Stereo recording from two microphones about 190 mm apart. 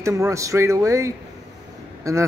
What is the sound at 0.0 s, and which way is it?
A man's voice, 15° right (ahead or behind).